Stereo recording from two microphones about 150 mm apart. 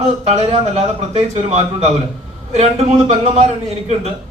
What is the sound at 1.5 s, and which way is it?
A man's voice, 40° right (ahead or behind).